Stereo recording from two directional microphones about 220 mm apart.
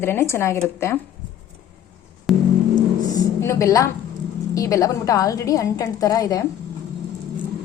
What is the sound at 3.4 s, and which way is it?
A woman's voice, 15° left (ahead or behind).